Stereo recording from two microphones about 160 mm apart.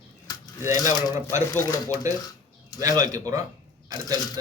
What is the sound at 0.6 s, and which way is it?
Speech, 20° right (ahead or behind).